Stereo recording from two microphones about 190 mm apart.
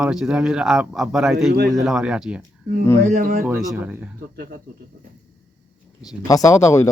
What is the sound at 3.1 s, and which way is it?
Speech, 45° right (ahead or behind).